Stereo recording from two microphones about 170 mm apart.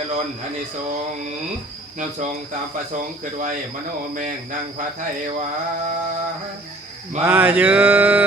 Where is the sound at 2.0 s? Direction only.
45° right (ahead or behind).